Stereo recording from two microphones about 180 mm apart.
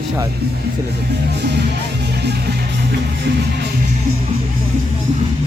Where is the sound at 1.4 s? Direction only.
70° right (ahead or behind).